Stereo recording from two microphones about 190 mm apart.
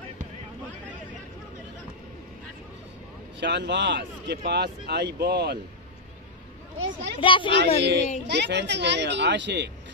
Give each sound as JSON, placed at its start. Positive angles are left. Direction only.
{"t": 3.3, "sound": "speech", "side_deg": -65}
{"t": 6.8, "sound": "a woman's voice", "side_deg": -70}
{"t": 7.2, "sound": "speech", "side_deg": 25}
{"t": 7.5, "sound": "speech", "side_deg": -65}